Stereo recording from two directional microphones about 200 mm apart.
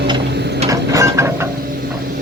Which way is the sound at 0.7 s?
15° right (ahead or behind).